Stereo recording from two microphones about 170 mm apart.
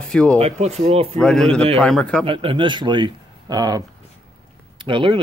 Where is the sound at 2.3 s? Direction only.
30° right (ahead or behind).